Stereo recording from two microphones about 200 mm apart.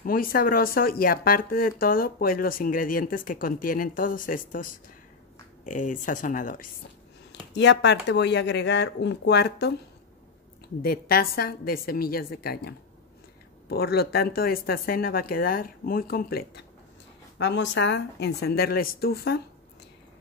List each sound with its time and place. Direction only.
0.0 s speech: 45° left (ahead or behind)
7.5 s speech: 60° left (ahead or behind)
10.8 s speech: 50° left (ahead or behind)
17.4 s speech: 60° left (ahead or behind)